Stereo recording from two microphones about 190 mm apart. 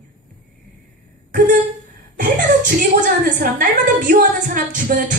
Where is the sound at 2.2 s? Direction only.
45° right (ahead or behind).